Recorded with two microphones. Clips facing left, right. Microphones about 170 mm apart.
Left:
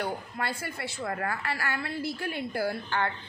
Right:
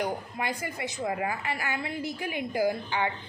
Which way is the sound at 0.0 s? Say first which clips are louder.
Right 2 dB; 15° right (ahead or behind).